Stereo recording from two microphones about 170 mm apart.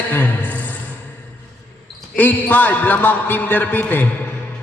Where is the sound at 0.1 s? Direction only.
10° left (ahead or behind).